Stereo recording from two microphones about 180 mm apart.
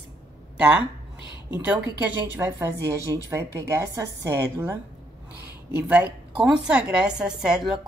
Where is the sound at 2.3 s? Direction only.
15° right (ahead or behind).